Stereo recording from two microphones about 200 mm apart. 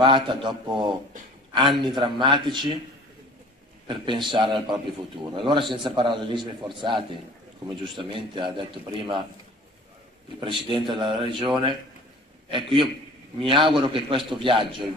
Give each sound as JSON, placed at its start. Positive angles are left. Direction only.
{"t": 0.0, "sound": "a man's voice", "side_deg": -25}
{"t": 3.8, "sound": "a man's voice", "side_deg": -25}
{"t": 10.4, "sound": "a man's voice", "side_deg": -25}